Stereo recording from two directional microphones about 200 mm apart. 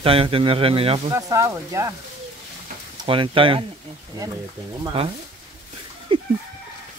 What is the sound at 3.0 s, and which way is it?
Speech, 25° right (ahead or behind).